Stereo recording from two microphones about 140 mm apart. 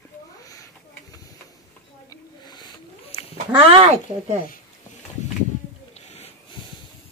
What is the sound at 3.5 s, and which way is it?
Speech, 45° right (ahead or behind).